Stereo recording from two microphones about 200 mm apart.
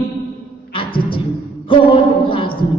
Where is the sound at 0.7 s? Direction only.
25° left (ahead or behind).